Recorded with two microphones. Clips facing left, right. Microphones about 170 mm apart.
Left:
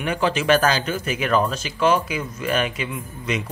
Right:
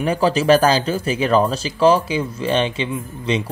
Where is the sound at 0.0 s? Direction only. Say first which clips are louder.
Right 5 dB; 35° right (ahead or behind).